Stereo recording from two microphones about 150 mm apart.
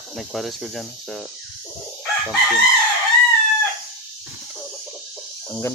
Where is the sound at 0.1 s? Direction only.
Centre (ahead or behind).